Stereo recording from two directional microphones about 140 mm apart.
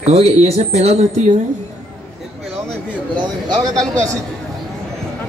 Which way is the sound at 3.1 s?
30° right (ahead or behind).